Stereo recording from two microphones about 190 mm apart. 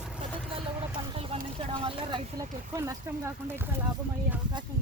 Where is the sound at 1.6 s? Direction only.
25° right (ahead or behind).